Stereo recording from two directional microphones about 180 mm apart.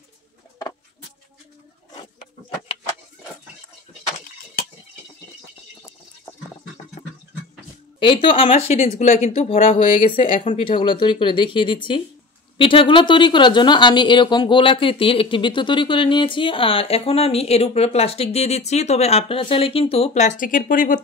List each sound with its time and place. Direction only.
8.0 s speech: 25° left (ahead or behind); by 21.0 s 50° left (ahead or behind)